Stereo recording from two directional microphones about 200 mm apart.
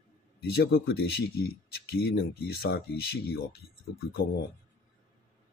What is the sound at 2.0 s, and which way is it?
Speech, 50° left (ahead or behind).